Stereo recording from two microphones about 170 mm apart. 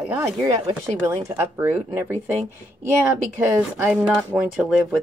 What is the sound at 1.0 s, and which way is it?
Speech, 15° right (ahead or behind).